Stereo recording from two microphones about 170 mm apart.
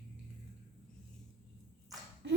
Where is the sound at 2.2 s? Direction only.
90° right.